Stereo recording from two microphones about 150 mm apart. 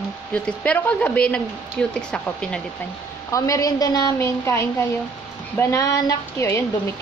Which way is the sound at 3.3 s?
25° left (ahead or behind).